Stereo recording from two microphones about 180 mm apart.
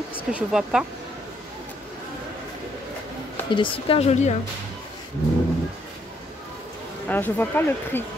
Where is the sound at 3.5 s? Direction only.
30° left (ahead or behind).